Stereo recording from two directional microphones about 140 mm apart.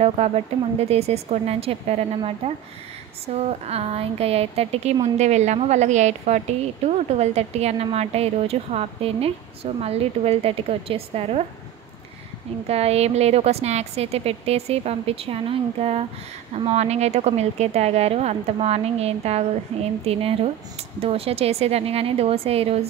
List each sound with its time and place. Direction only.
0.2 s a woman's voice: 45° right (ahead or behind)
12.6 s a woman's voice: 45° right (ahead or behind)